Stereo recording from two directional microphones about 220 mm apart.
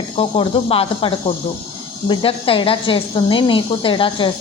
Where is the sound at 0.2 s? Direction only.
25° left (ahead or behind).